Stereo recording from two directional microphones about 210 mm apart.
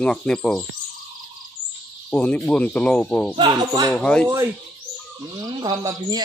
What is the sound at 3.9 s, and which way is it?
Speech, 5° left (ahead or behind).